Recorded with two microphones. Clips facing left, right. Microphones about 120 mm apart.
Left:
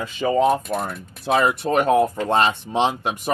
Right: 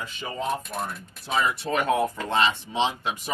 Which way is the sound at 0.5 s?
55° left (ahead or behind).